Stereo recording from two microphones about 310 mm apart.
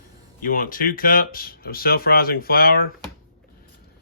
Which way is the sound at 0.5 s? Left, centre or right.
Left.